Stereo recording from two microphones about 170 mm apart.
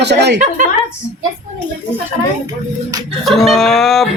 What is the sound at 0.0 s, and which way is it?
Speech, 85° right.